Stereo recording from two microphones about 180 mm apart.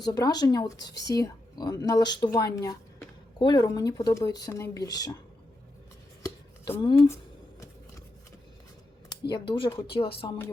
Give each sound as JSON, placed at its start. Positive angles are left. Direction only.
{"t": 0.0, "sound": "speech", "side_deg": 20}
{"t": 6.8, "sound": "speech", "side_deg": 25}
{"t": 9.3, "sound": "speech", "side_deg": 25}